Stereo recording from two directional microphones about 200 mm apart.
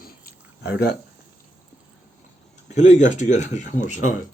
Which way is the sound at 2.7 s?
35° left (ahead or behind).